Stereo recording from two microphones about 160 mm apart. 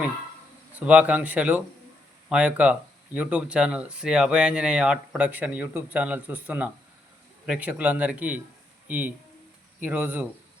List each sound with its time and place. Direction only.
0.8 s speech: 10° right (ahead or behind)